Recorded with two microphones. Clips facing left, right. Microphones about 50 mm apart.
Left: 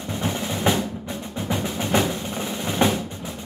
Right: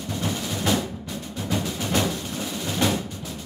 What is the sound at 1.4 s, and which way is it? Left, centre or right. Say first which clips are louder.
Music: left 1 dB; left.